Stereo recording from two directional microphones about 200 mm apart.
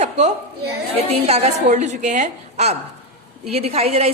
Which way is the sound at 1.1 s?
35° right (ahead or behind).